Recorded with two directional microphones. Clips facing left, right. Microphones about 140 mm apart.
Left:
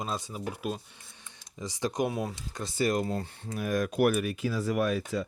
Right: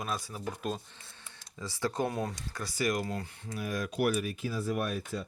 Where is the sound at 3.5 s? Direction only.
50° left (ahead or behind); by 5.2 s 90° left.